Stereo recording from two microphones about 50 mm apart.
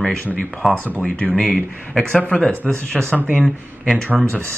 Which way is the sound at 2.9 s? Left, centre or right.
Centre.